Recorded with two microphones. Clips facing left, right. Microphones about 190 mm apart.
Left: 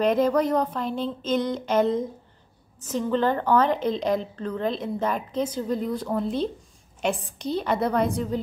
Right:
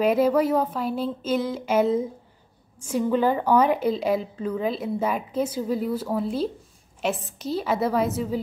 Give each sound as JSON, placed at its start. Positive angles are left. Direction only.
{"t": 0.0, "sound": "a woman's voice", "side_deg": -5}